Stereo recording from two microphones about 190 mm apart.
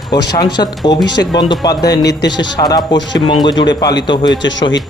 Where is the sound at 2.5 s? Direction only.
20° left (ahead or behind).